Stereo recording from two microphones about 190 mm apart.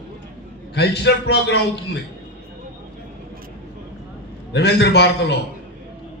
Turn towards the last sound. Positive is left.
turn(degrees=60)  # may be behind; listen again after turning